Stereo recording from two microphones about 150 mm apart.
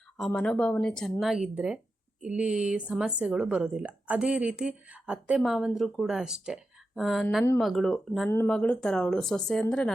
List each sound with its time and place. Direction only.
0.3 s a woman's voice: 5° left (ahead or behind)